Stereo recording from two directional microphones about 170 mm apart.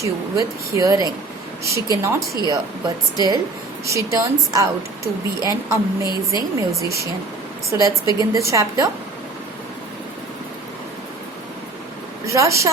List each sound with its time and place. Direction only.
0.0 s a woman's voice: 20° right (ahead or behind)
12.2 s a woman's voice: 20° right (ahead or behind)